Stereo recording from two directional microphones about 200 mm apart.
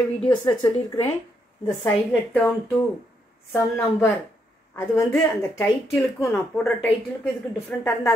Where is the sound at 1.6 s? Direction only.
5° left (ahead or behind).